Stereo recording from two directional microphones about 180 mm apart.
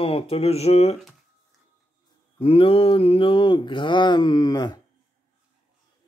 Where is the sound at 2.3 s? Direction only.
30° left (ahead or behind).